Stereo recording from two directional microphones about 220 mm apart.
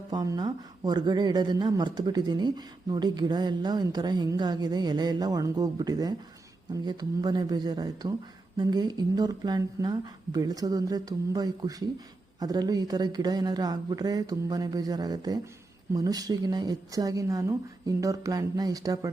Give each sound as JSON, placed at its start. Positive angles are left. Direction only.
{"t": 0.1, "sound": "speech", "side_deg": -20}